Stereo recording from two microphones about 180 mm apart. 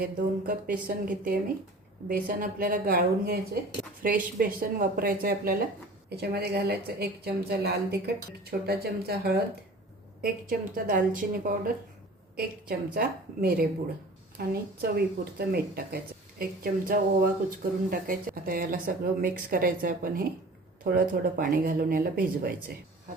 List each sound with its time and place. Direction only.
0.0 s a woman's voice: 50° right (ahead or behind)